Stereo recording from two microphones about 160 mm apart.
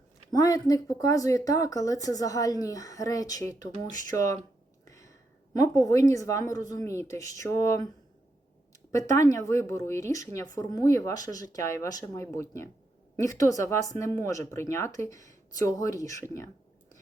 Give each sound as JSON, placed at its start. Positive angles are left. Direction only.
{"t": 0.3, "sound": "a woman's voice", "side_deg": 20}
{"t": 4.9, "sound": "a sound", "side_deg": 20}
{"t": 5.5, "sound": "a woman's voice", "side_deg": 20}
{"t": 8.9, "sound": "a woman's voice", "side_deg": 20}